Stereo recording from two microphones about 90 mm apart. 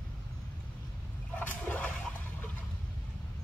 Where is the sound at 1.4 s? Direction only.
20° left (ahead or behind).